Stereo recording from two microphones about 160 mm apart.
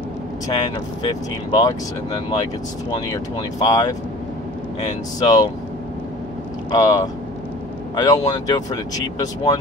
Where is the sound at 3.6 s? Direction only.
25° left (ahead or behind).